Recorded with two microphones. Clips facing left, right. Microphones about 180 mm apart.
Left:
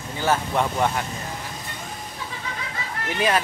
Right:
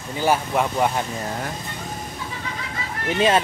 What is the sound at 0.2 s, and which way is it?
Speech, 10° right (ahead or behind).